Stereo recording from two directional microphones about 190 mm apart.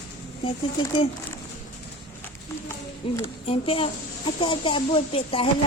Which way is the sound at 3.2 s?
30° left (ahead or behind).